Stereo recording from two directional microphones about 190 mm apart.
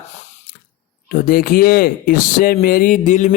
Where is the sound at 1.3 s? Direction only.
50° left (ahead or behind).